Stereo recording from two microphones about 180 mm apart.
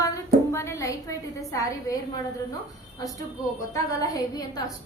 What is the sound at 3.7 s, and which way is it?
Speech, 20° left (ahead or behind).